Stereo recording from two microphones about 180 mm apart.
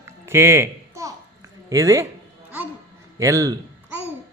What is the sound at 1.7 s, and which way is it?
Speech, 15° right (ahead or behind).